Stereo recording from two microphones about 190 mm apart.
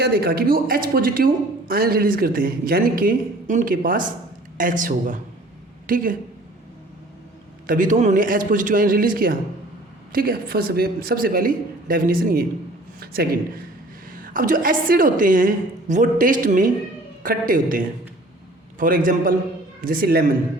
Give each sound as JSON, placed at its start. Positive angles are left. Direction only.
{"t": 0.0, "sound": "speech", "side_deg": -55}
{"t": 7.7, "sound": "speech", "side_deg": -45}